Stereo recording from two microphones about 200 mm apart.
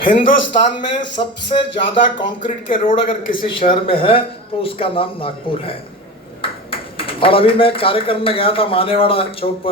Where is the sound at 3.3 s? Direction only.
25° left (ahead or behind).